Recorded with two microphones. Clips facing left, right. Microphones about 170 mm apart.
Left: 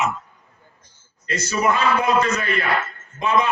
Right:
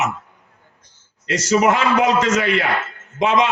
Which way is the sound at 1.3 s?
85° right.